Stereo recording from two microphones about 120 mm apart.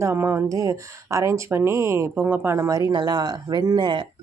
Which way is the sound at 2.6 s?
30° right (ahead or behind).